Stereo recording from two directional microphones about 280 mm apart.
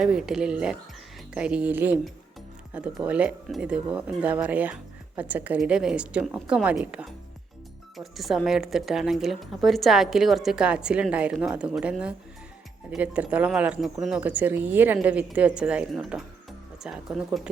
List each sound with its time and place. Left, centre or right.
0.0 s speech: centre